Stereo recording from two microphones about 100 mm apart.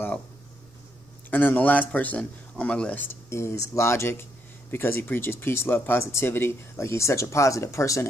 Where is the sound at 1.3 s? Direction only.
20° left (ahead or behind).